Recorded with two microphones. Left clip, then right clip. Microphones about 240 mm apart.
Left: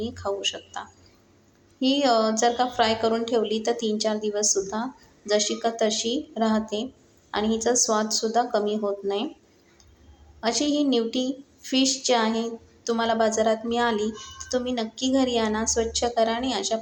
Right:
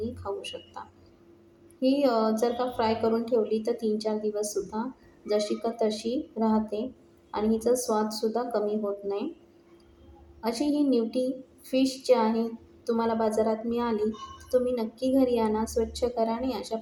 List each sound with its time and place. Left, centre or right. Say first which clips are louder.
0.2 s speech: left 7 dB; left
1.8 s a woman's voice: left 3 dB; left
10.4 s a woman's voice: left 3 dB; left